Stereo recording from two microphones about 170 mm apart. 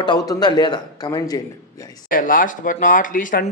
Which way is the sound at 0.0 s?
25° left (ahead or behind).